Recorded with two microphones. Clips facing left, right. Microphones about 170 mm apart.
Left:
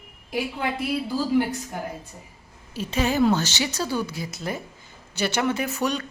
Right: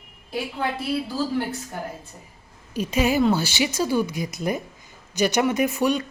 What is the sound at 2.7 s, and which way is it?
A woman's voice, 15° right (ahead or behind).